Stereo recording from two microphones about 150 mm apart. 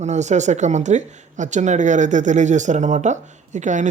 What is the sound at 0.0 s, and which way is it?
Speech, 50° right (ahead or behind).